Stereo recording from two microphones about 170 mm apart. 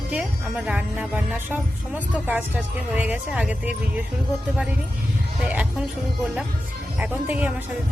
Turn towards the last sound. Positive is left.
turn(degrees=-10)  # may be behind; listen again after turning